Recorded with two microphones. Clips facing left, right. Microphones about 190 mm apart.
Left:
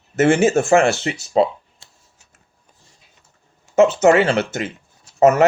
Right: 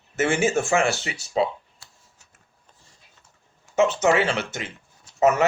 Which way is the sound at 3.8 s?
40° left (ahead or behind).